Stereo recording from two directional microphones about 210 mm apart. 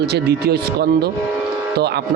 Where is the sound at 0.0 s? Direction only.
50° right (ahead or behind).